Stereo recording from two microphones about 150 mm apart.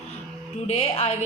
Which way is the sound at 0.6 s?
45° left (ahead or behind).